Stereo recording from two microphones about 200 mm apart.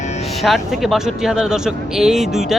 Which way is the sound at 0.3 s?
Centre (ahead or behind).